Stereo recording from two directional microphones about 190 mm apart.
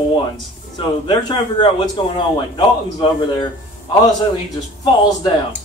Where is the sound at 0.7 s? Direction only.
25° left (ahead or behind).